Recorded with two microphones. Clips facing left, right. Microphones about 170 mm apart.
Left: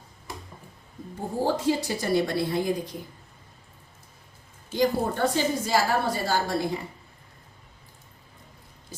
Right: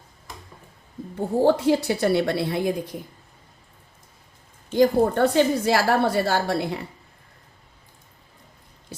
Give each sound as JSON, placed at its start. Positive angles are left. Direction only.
{"t": 1.5, "sound": "a woman's voice", "side_deg": -65}
{"t": 4.7, "sound": "a woman's voice", "side_deg": -55}